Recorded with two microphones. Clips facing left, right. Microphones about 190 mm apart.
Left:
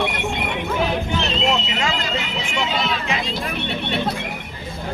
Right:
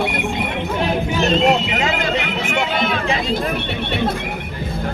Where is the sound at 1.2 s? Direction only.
50° right (ahead or behind).